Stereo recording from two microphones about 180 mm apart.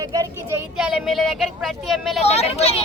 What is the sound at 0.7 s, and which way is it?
Speech, 5° right (ahead or behind).